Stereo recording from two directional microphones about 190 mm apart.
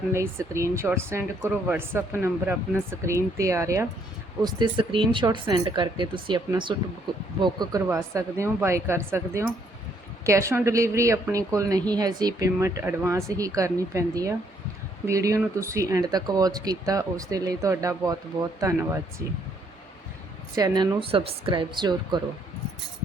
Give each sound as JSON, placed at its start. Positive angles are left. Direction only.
{"t": 0.1, "sound": "a woman's voice", "side_deg": -15}
{"t": 4.4, "sound": "a woman's voice", "side_deg": -25}
{"t": 20.6, "sound": "speech", "side_deg": -20}